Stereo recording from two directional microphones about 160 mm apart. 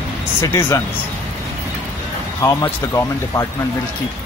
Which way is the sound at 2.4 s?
20° left (ahead or behind).